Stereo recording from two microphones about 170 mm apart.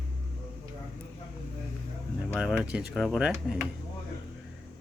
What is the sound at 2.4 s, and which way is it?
Speech, 5° right (ahead or behind).